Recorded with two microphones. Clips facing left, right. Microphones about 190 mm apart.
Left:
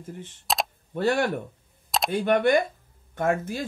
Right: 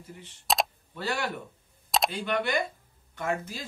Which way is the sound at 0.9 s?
50° left (ahead or behind).